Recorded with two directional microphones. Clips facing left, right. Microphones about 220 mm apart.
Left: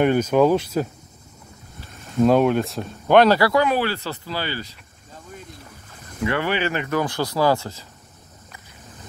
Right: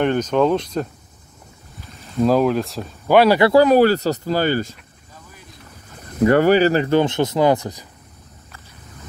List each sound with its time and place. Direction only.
0.0 s speech: 10° left (ahead or behind)
2.1 s speech: centre (ahead or behind)
3.3 s speech: 25° right (ahead or behind)
3.6 s speech: 40° right (ahead or behind)
6.1 s speech: 45° right (ahead or behind); by 7.8 s 15° right (ahead or behind)